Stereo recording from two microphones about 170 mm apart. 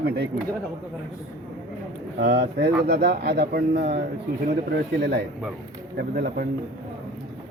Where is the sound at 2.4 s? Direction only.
70° right (ahead or behind).